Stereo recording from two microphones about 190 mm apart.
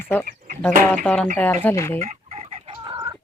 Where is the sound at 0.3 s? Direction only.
40° right (ahead or behind).